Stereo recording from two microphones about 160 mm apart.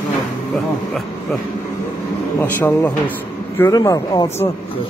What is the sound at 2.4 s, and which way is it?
Speech, 10° left (ahead or behind).